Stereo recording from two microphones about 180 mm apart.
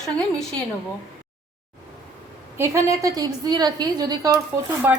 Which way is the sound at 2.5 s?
15° right (ahead or behind).